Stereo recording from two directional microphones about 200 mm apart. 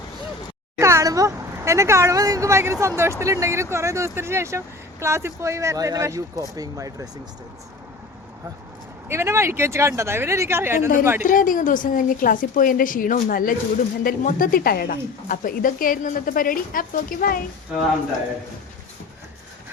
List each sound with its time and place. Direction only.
0.8 s speech: 15° right (ahead or behind)
9.0 s speech: 15° right (ahead or behind)
10.8 s a woman's voice: 40° left (ahead or behind)